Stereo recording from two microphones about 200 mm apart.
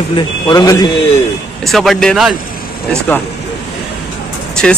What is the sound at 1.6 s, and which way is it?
Speech, centre (ahead or behind).